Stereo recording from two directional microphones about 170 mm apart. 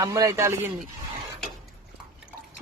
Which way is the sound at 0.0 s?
20° right (ahead or behind).